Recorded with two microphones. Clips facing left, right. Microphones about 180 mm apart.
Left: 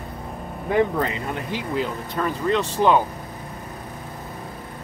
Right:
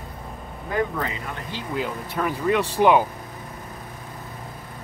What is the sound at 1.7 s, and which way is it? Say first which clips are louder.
Speech: even; 5° right (ahead or behind).